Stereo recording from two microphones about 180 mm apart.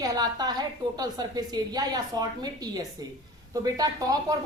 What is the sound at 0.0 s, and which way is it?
A woman's voice, 20° right (ahead or behind).